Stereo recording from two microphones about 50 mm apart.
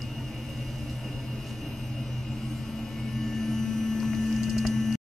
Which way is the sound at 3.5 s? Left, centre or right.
Centre.